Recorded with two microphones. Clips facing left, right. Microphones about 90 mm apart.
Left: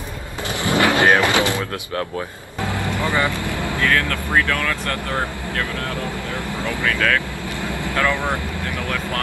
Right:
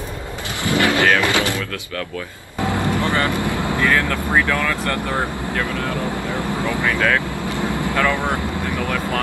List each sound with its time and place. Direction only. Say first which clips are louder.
0.7 s vehicle: left 1 dB; 20° left (ahead or behind)
3.0 s speech: left 2 dB; 20° left (ahead or behind)
3.3 s speech: right 3 dB; 20° right (ahead or behind)
7.6 s vehicle: right 1 dB; 20° right (ahead or behind)